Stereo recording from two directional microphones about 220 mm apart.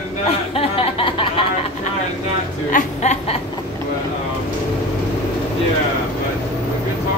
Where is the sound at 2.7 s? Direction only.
30° left (ahead or behind).